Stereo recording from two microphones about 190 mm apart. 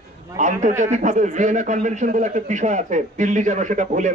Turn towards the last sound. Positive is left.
turn(degrees=-40)  # may be behind; listen again after turning